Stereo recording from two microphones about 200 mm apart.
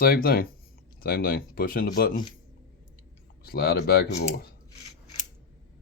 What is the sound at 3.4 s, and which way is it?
Speech, 50° left (ahead or behind).